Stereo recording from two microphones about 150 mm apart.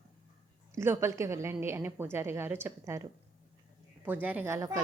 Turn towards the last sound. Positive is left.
turn(degrees=-20)  # may be behind; listen again after turning